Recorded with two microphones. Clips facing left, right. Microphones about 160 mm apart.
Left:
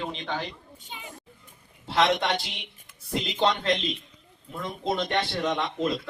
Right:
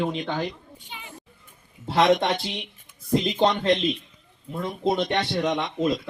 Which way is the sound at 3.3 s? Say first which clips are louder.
Even; 35° right (ahead or behind).